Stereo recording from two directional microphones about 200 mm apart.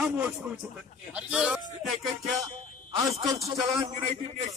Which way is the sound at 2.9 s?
20° right (ahead or behind).